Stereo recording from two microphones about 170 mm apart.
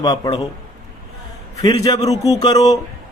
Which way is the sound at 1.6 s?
25° left (ahead or behind).